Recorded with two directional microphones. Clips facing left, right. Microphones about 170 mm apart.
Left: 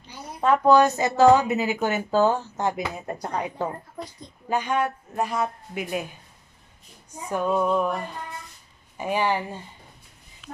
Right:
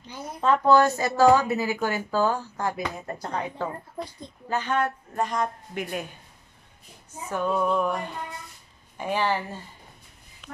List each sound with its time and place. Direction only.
0.4 s a woman's voice: 15° left (ahead or behind)
7.1 s a woman's voice: 15° left (ahead or behind)